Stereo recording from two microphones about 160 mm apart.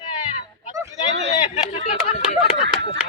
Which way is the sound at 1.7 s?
45° left (ahead or behind).